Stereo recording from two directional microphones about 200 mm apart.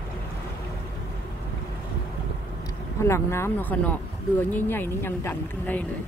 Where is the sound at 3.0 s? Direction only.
15° left (ahead or behind).